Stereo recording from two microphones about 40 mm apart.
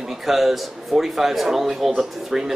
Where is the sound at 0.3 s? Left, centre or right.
Centre.